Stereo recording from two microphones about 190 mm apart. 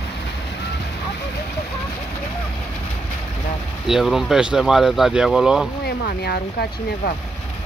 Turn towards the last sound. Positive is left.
turn(degrees=55)  # may be behind; listen again after turning